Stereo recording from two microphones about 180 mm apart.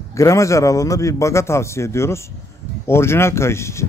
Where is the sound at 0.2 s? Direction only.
15° left (ahead or behind).